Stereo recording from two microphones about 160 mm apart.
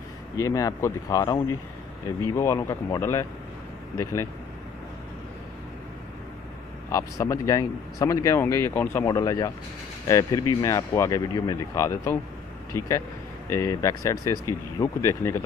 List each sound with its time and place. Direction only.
0.4 s speech: 20° left (ahead or behind)
6.9 s speech: 20° left (ahead or behind)